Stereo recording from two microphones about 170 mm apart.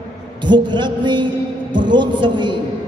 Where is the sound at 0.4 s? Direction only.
25° right (ahead or behind).